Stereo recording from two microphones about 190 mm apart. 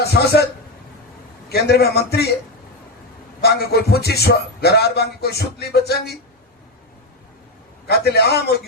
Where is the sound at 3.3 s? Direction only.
55° left (ahead or behind).